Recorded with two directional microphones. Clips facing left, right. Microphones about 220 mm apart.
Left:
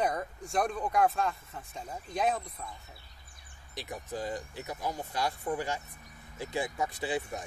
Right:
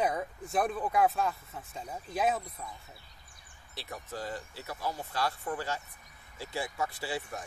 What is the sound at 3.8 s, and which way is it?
Speech, 15° left (ahead or behind).